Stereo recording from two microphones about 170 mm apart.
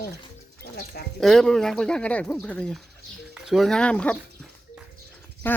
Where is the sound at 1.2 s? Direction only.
5° left (ahead or behind).